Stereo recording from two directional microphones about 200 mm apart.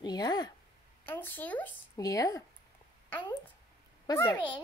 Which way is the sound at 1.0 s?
10° left (ahead or behind).